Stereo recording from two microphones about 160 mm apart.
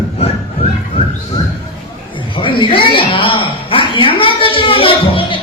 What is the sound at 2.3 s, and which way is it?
A man's voice, 30° left (ahead or behind).